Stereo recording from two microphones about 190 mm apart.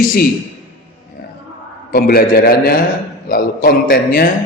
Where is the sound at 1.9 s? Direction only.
50° left (ahead or behind).